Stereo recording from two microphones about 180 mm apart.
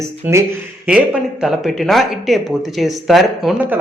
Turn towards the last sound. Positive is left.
turn(degrees=-5)  # may be behind; listen again after turning